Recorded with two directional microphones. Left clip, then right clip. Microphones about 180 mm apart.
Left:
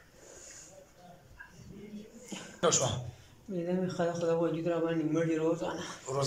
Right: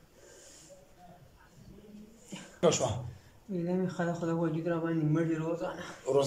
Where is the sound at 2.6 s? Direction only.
15° right (ahead or behind).